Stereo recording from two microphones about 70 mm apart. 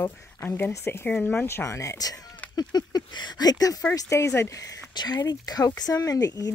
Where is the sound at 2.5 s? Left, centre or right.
Left.